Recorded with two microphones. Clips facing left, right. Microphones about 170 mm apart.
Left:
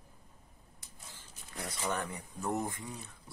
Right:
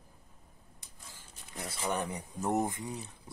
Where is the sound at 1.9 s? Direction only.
20° right (ahead or behind).